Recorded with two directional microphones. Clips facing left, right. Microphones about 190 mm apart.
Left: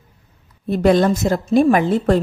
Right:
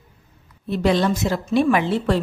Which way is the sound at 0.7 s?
50° left (ahead or behind).